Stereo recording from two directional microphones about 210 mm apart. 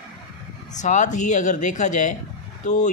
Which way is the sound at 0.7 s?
35° left (ahead or behind).